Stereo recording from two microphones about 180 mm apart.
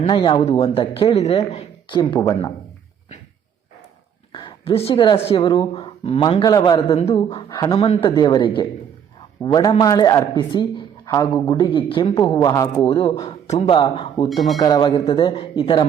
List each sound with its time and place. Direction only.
0.1 s speech: 25° left (ahead or behind)
2.0 s a man's voice: 20° left (ahead or behind)
4.3 s a sound: 25° left (ahead or behind)
5.3 s a man's voice: 25° left (ahead or behind)
14.3 s speech: centre (ahead or behind)
14.6 s a man's voice: 20° left (ahead or behind)